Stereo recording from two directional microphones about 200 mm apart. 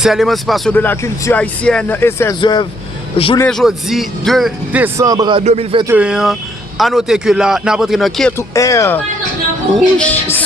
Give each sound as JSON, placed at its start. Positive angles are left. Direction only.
{"t": 0.0, "sound": "speech", "side_deg": 0}
{"t": 2.4, "sound": "speech", "side_deg": 25}
{"t": 3.3, "sound": "a man's voice", "side_deg": 5}
{"t": 5.4, "sound": "a man's voice", "side_deg": -30}
{"t": 5.9, "sound": "a man's voice", "side_deg": -5}
{"t": 8.4, "sound": "speech", "side_deg": 15}